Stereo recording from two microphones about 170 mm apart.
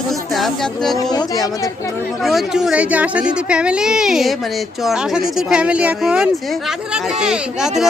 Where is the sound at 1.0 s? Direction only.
20° left (ahead or behind).